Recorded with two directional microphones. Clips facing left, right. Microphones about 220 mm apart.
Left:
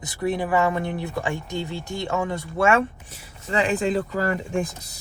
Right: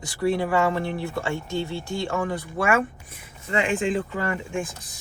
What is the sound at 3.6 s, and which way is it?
Speech, 40° left (ahead or behind).